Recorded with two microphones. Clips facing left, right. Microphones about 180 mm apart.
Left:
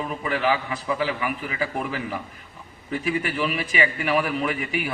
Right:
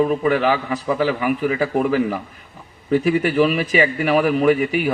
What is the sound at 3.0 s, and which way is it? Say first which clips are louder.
A man's voice: right 7 dB; 40° right (ahead or behind).